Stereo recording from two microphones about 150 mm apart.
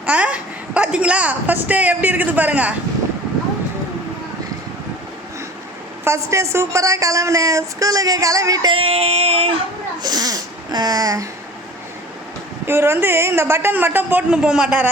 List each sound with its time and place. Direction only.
0.0 s a woman's voice: 10° right (ahead or behind)
6.1 s a woman's voice: 20° right (ahead or behind)
8.7 s a sound: 40° right (ahead or behind)
10.0 s a woman's voice: 25° right (ahead or behind)
12.6 s a man's voice: 15° right (ahead or behind)